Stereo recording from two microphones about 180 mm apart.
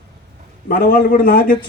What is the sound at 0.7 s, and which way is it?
Speech, 55° left (ahead or behind).